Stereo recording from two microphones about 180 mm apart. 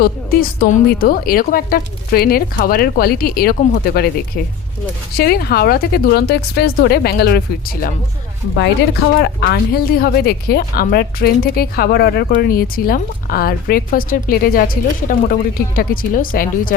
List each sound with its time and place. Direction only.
0.0 s speech: 60° left (ahead or behind)
8.5 s speech: 70° left (ahead or behind); by 16.7 s 50° left (ahead or behind)